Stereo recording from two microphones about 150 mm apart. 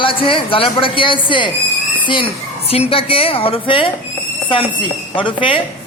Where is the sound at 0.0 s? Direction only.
35° left (ahead or behind).